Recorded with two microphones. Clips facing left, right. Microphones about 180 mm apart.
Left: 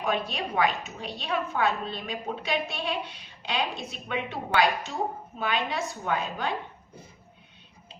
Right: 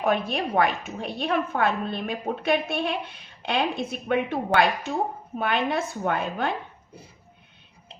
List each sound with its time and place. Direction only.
0.0 s a woman's voice: 55° right (ahead or behind)